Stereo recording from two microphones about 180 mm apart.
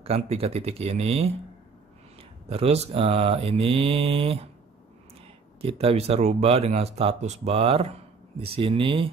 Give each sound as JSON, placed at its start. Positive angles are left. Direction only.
{"t": 0.0, "sound": "mantra", "side_deg": -35}
{"t": 2.5, "sound": "mantra", "side_deg": -35}
{"t": 5.6, "sound": "mantra", "side_deg": -30}
{"t": 7.4, "sound": "speech", "side_deg": -30}